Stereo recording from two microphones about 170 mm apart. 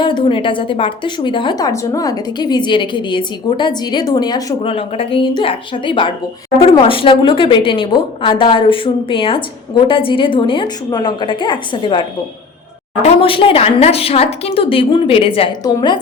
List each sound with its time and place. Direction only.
0.0 s a woman's voice: 30° left (ahead or behind)
4.6 s a woman's voice: 35° left (ahead or behind)